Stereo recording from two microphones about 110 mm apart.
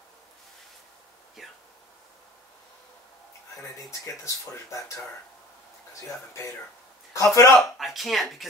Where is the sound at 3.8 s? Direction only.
30° left (ahead or behind).